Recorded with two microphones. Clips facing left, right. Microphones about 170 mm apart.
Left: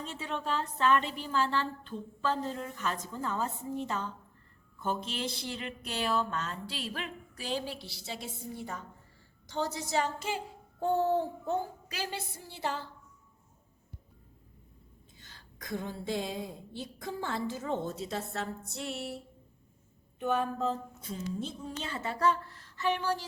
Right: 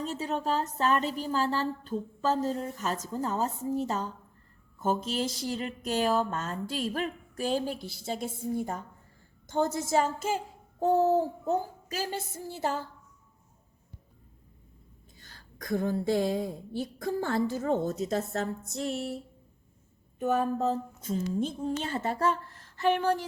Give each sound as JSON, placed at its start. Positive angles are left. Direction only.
{"t": 0.0, "sound": "a woman's voice", "side_deg": -40}
{"t": 15.2, "sound": "a woman's voice", "side_deg": -45}
{"t": 20.1, "sound": "speech", "side_deg": -40}